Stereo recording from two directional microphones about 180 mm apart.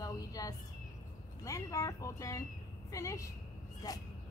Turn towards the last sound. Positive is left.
turn(degrees=20)  # may be behind; listen again after turning